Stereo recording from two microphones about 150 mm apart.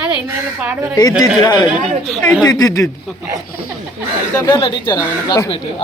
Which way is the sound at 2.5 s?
25° left (ahead or behind).